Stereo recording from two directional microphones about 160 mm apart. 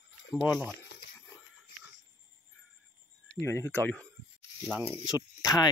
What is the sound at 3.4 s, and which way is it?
Speech, 15° left (ahead or behind).